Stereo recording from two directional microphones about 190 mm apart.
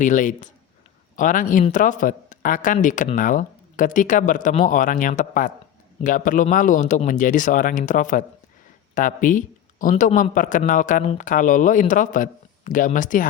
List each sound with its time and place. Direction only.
0.0 s a man's voice: 40° left (ahead or behind)